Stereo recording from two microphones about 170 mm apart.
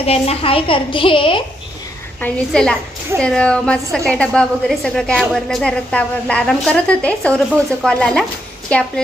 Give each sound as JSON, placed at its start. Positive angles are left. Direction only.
{"t": 0.0, "sound": "a woman's voice", "side_deg": 35}
{"t": 2.2, "sound": "a woman's voice", "side_deg": 5}